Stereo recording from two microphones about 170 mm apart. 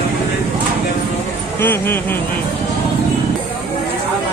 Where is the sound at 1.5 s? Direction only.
15° left (ahead or behind).